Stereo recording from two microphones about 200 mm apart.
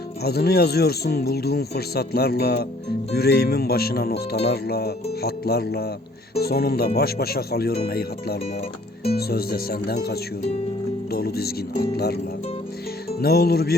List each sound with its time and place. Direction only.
0.2 s speech: 50° left (ahead or behind)